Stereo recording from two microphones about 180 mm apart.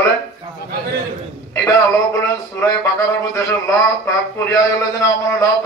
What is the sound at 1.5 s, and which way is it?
Music, 15° left (ahead or behind).